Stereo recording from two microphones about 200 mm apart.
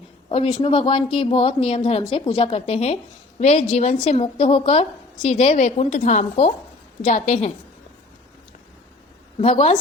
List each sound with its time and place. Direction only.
0.3 s a woman's voice: 25° left (ahead or behind)
9.4 s a woman's voice: 30° left (ahead or behind)